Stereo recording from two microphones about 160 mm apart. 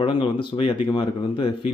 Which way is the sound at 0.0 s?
30° left (ahead or behind).